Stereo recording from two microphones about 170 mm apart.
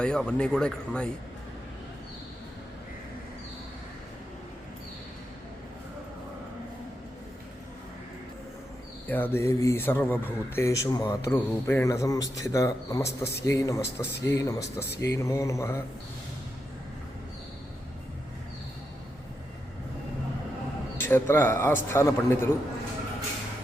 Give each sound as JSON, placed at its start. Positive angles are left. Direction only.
{"t": 0.0, "sound": "speech", "side_deg": 5}
{"t": 9.0, "sound": "speech", "side_deg": 10}
{"t": 21.1, "sound": "speech", "side_deg": 15}